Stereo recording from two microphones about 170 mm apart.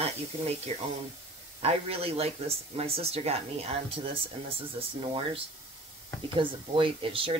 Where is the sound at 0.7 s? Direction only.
40° right (ahead or behind).